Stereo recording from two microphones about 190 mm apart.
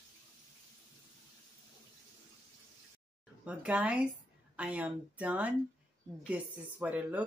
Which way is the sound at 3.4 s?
5° right (ahead or behind).